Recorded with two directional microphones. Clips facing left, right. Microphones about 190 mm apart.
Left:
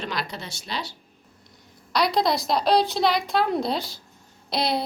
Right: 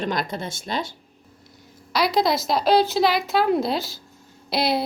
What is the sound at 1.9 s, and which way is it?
A woman's voice, centre (ahead or behind).